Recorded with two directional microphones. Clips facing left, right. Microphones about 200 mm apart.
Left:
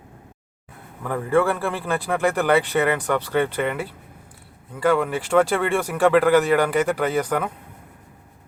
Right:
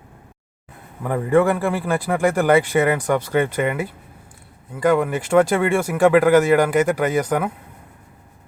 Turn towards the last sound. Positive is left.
turn(degrees=-10)  # may be behind; listen again after turning